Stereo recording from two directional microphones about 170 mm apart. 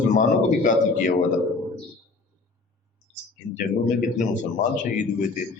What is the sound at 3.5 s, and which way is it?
Speech, 50° left (ahead or behind).